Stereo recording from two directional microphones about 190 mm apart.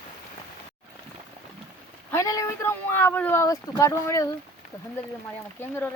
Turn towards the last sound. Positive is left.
turn(degrees=10)  # may be behind; listen again after turning